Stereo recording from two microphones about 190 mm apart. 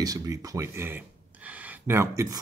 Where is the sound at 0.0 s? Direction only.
20° right (ahead or behind).